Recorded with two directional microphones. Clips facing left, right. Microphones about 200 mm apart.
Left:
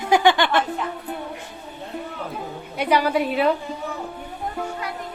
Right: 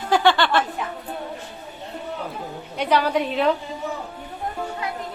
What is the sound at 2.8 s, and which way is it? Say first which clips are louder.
Speech: left 1 dB; 10° left (ahead or behind).